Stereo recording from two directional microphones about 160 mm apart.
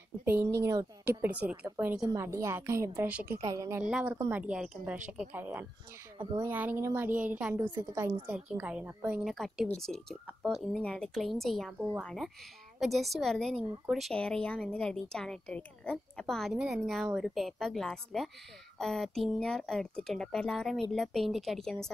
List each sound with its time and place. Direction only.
0.2 s a woman's voice: 15° right (ahead or behind)
3.9 s a woman's voice: 10° right (ahead or behind)